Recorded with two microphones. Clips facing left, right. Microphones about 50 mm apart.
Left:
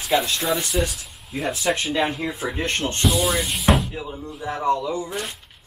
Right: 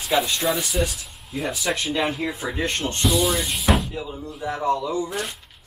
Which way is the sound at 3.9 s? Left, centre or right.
Left.